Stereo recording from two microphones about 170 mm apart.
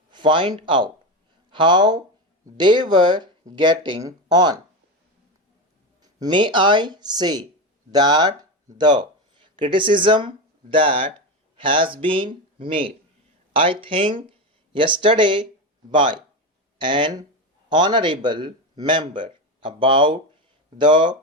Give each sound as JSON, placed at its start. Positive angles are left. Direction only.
{"t": 0.1, "sound": "speech", "side_deg": -30}
{"t": 6.0, "sound": "a man's voice", "side_deg": -25}